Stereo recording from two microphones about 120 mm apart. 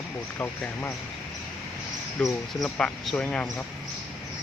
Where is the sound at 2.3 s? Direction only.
5° left (ahead or behind).